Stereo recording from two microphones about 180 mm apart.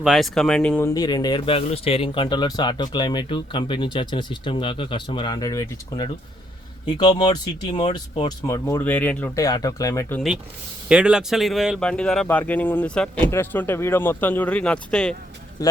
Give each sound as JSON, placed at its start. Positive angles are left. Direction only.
{"t": 0.0, "sound": "speech", "side_deg": 0}
{"t": 10.8, "sound": "speech", "side_deg": -5}
{"t": 15.6, "sound": "speech", "side_deg": 15}